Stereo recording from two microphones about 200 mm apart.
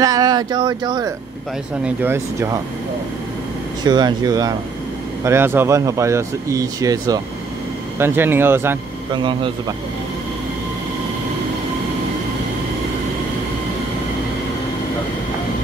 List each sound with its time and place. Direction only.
0.0 s speech: 20° right (ahead or behind)
3.8 s speech: 20° right (ahead or behind)
9.1 s speech: 25° right (ahead or behind)